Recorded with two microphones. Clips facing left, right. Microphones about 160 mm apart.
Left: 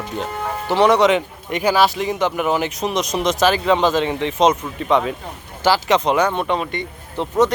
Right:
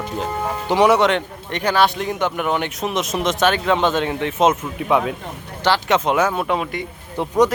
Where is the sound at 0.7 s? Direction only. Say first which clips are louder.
Left 1 dB; 10° right (ahead or behind).